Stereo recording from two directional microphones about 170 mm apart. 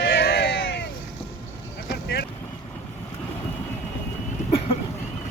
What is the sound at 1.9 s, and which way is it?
Vehicle, 75° left (ahead or behind).